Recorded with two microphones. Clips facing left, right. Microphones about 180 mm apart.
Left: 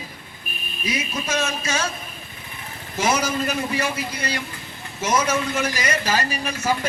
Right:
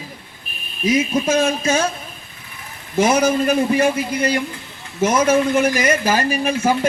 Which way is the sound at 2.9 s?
55° right (ahead or behind).